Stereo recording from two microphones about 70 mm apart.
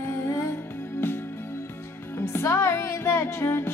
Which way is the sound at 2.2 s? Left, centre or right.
Left.